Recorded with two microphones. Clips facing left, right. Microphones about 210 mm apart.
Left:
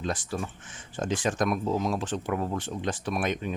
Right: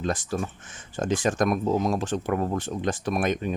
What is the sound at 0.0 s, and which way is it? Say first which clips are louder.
Speech: right 4 dB; 45° right (ahead or behind).